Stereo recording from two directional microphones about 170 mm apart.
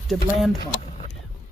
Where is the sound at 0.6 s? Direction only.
25° left (ahead or behind).